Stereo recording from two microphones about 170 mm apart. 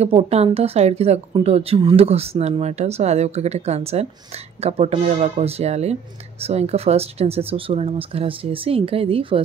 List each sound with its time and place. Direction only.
0.0 s speech: 35° right (ahead or behind)